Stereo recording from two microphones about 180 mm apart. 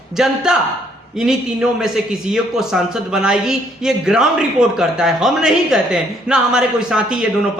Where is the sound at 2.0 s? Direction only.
5° right (ahead or behind).